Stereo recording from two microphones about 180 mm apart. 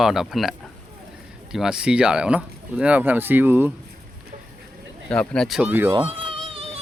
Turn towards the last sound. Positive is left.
turn(degrees=-30)  # may be behind; listen again after turning